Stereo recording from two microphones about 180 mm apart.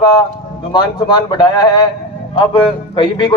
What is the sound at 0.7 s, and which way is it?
A man's voice, 25° left (ahead or behind).